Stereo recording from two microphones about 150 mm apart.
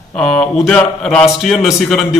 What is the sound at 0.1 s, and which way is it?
A man's voice, 5° left (ahead or behind).